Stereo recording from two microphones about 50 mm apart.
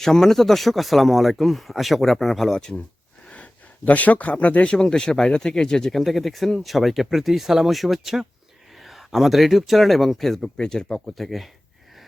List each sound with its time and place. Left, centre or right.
0.0 s speech: centre
3.2 s speech: left; by 10.5 s centre
10.6 s speech: centre
11.0 s speech: centre